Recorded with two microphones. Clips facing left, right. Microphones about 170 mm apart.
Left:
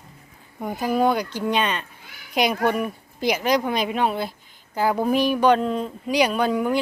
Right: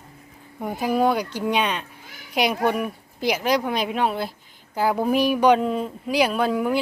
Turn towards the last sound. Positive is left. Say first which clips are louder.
# even
turn(degrees=0)  # may be behind; listen again after turning